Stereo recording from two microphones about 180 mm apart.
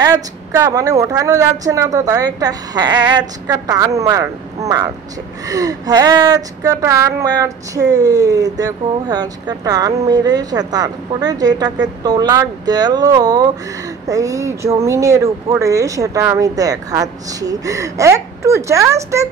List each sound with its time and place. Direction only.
0.0 s speech: 20° right (ahead or behind)